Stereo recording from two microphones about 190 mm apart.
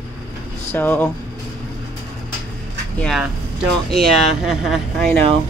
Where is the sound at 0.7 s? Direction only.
10° left (ahead or behind).